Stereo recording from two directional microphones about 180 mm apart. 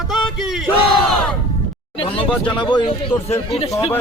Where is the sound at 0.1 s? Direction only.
Centre (ahead or behind).